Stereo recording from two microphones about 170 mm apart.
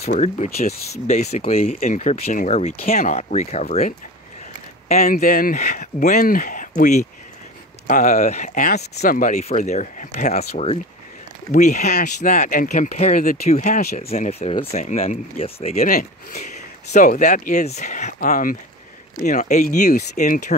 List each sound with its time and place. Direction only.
0.0 s speech: 40° left (ahead or behind)
5.0 s speech: 55° left (ahead or behind)
9.3 s speech: 40° left (ahead or behind)
15.7 s speech: 50° left (ahead or behind)